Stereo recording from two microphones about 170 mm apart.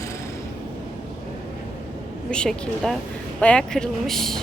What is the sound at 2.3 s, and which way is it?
Speech, 5° left (ahead or behind).